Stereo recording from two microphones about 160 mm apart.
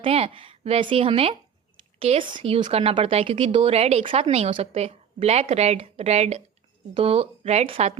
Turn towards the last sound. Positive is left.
turn(degrees=-35)  # may be behind; listen again after turning